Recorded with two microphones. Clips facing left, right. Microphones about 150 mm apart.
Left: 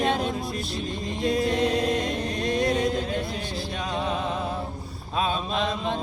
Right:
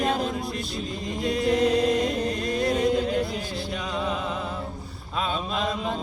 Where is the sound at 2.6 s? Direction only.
5° right (ahead or behind).